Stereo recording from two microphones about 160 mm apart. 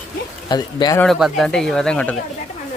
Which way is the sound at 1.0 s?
Centre (ahead or behind).